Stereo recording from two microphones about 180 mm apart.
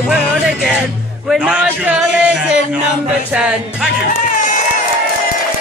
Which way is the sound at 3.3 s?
5° right (ahead or behind).